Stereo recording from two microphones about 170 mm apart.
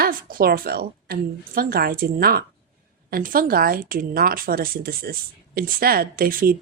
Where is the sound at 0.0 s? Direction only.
60° right (ahead or behind).